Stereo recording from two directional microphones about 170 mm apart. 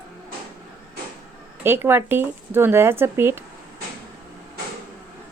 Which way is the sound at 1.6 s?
15° right (ahead or behind).